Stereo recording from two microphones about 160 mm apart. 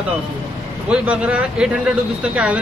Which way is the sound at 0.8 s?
5° right (ahead or behind).